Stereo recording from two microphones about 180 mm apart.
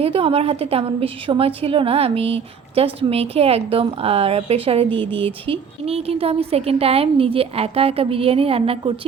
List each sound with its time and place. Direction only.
0.0 s a woman's voice: 30° right (ahead or behind)